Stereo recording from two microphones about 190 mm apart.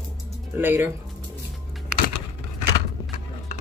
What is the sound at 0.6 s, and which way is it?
Speech, 10° right (ahead or behind).